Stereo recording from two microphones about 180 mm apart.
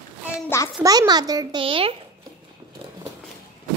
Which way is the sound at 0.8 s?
20° right (ahead or behind).